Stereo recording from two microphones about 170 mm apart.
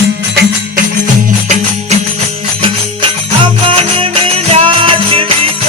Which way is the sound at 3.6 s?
30° right (ahead or behind).